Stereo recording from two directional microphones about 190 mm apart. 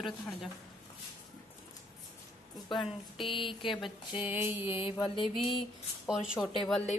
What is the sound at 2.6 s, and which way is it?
Mantra, 25° left (ahead or behind).